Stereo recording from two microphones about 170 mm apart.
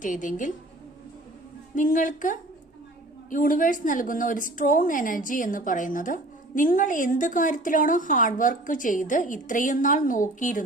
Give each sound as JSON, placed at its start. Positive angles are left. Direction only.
{"t": 0.0, "sound": "a woman's voice", "side_deg": 50}
{"t": 1.7, "sound": "a woman's voice", "side_deg": 50}